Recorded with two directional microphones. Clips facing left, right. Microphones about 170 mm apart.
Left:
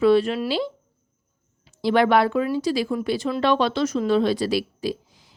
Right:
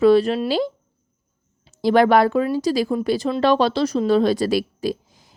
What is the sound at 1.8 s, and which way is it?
A woman's voice, 40° right (ahead or behind).